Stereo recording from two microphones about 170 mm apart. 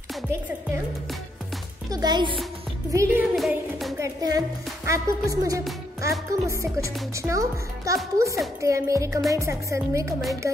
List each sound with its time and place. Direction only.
1.9 s a woman's voice: 25° right (ahead or behind)
3.3 s music: centre (ahead or behind)
4.0 s a woman's voice: 20° right (ahead or behind)